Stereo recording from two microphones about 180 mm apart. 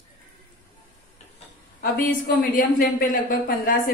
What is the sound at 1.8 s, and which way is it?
A woman's voice, 50° left (ahead or behind).